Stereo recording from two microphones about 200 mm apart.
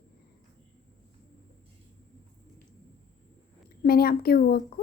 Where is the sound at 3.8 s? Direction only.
50° left (ahead or behind).